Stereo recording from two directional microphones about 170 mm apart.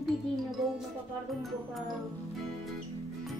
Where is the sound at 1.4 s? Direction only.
Centre (ahead or behind).